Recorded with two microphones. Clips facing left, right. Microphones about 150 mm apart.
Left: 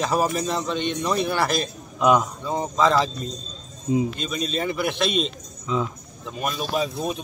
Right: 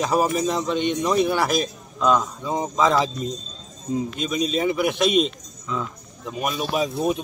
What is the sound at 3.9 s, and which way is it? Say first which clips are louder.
Speech: left 3 dB; 10° left (ahead or behind).